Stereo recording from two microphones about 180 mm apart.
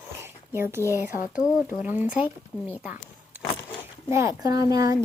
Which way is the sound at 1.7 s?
10° right (ahead or behind).